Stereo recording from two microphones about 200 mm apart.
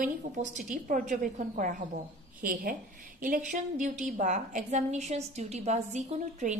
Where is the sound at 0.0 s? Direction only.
40° right (ahead or behind).